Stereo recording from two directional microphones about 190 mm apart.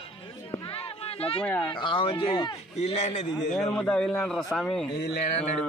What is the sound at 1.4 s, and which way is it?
Speech, 10° left (ahead or behind).